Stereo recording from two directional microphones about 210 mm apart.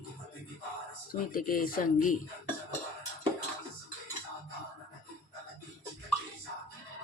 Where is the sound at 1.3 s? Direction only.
45° left (ahead or behind).